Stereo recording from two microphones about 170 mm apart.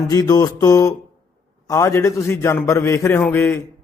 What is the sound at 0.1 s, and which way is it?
Music, 20° left (ahead or behind).